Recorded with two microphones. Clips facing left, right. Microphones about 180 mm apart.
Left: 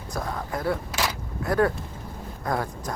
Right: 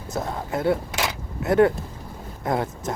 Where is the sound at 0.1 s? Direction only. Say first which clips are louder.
Right 3 dB; 25° right (ahead or behind).